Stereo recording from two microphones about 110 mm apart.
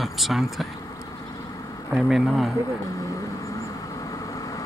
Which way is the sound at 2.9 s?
30° left (ahead or behind).